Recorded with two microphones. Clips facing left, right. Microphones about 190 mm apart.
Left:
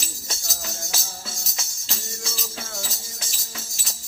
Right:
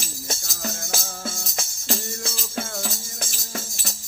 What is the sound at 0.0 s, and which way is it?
Music, 50° right (ahead or behind).